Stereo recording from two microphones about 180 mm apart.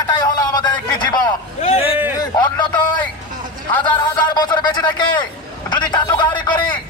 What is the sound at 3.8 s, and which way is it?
Speech, 25° left (ahead or behind).